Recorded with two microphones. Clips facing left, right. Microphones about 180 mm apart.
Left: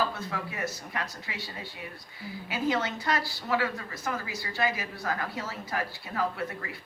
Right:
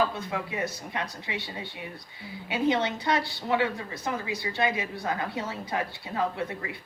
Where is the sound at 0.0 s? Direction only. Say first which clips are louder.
Right 3 dB; 20° right (ahead or behind).